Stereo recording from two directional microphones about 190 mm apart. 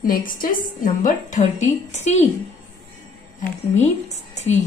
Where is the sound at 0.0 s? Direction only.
45° left (ahead or behind).